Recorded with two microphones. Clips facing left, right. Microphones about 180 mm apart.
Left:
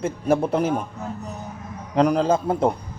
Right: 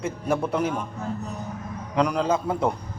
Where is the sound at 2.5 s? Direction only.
50° left (ahead or behind).